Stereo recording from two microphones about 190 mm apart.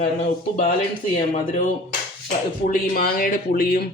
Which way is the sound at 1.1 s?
40° left (ahead or behind).